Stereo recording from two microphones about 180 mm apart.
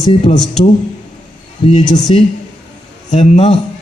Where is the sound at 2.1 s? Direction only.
35° left (ahead or behind).